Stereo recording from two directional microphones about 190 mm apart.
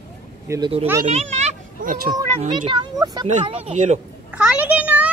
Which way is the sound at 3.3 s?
35° right (ahead or behind).